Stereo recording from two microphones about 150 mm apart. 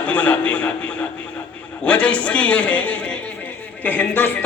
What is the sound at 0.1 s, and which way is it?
Speech, 10° left (ahead or behind).